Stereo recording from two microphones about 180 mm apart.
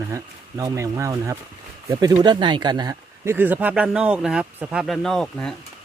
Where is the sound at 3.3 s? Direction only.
10° right (ahead or behind).